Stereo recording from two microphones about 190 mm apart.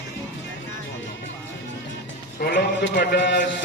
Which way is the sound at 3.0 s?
60° left (ahead or behind).